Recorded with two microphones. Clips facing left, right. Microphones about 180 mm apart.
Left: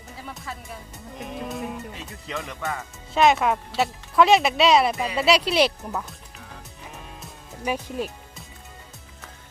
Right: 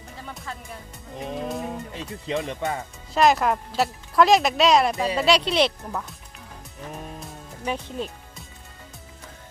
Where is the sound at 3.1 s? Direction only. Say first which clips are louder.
Even; centre (ahead or behind).